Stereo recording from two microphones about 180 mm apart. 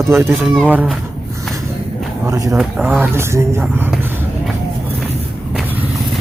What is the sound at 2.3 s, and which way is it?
Speech, 20° right (ahead or behind).